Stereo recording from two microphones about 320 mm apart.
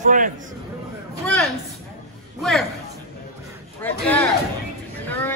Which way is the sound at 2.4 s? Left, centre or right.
Centre.